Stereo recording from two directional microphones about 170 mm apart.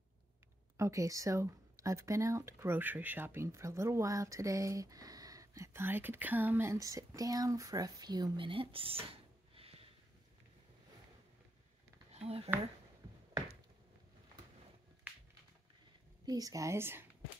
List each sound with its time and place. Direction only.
0.7 s speech: 20° right (ahead or behind); by 9.8 s 35° right (ahead or behind)
12.1 s a sound: 35° right (ahead or behind)
16.3 s speech: 20° right (ahead or behind)